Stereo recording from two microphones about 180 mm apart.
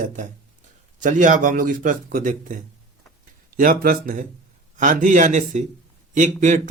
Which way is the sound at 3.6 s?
50° right (ahead or behind).